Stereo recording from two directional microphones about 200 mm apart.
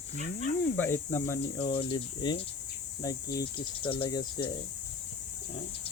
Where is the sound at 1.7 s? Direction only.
20° left (ahead or behind).